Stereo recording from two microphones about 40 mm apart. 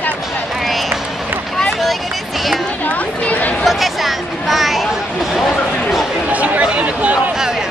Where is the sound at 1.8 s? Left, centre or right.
Centre.